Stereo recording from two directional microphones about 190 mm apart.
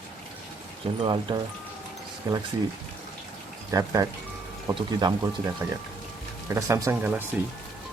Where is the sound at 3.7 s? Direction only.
20° right (ahead or behind).